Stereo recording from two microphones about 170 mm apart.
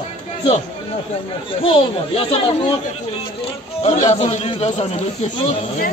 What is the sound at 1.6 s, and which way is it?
Speech, 30° left (ahead or behind).